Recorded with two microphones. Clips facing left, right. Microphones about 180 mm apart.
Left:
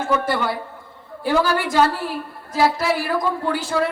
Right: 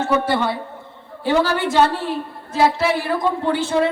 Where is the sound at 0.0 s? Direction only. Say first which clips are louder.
Right 2 dB; 25° right (ahead or behind).